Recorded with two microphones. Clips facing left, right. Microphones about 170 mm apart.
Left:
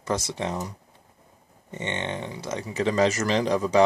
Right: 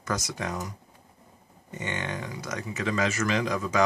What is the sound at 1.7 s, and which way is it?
Speech, 25° left (ahead or behind).